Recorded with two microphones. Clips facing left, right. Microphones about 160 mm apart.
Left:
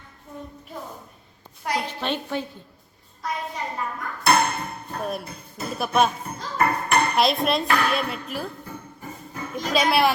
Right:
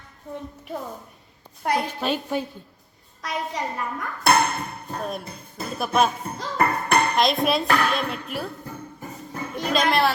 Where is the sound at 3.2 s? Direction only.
90° right.